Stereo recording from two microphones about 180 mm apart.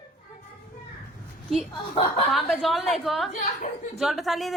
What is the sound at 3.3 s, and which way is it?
Speech, 45° left (ahead or behind).